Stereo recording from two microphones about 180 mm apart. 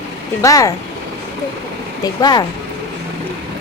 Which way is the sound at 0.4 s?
20° left (ahead or behind).